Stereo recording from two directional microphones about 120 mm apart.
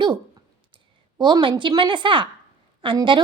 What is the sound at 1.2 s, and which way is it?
A woman's voice, 40° right (ahead or behind).